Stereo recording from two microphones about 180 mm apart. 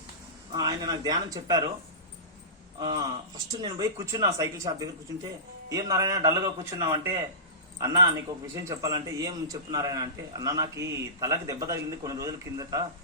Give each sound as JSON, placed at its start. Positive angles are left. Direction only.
{"t": 0.5, "sound": "a man's voice", "side_deg": -20}
{"t": 2.7, "sound": "a man's voice", "side_deg": -25}
{"t": 8.5, "sound": "a man's voice", "side_deg": -20}